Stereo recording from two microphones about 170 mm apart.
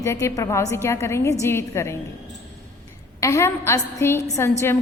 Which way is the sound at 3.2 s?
15° left (ahead or behind).